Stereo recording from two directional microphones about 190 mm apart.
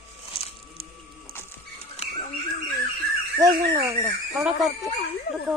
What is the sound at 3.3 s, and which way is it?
Speech, 20° right (ahead or behind).